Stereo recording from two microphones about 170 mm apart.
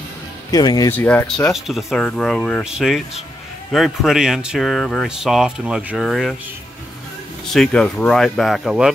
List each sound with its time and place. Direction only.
0.5 s speech: 25° left (ahead or behind)
0.9 s speech: 10° left (ahead or behind)
1.5 s speech: centre (ahead or behind)
7.4 s speech: centre (ahead or behind)